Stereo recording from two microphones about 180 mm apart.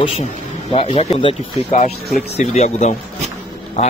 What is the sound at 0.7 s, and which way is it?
Speech, 30° left (ahead or behind).